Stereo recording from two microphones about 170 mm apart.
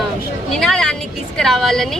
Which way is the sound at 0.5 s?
Centre (ahead or behind).